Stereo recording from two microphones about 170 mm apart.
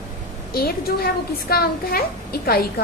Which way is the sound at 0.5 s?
65° left (ahead or behind).